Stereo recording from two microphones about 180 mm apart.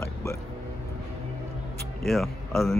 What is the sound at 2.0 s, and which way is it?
Speech, centre (ahead or behind).